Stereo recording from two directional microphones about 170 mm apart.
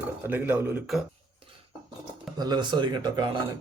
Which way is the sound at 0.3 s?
10° right (ahead or behind).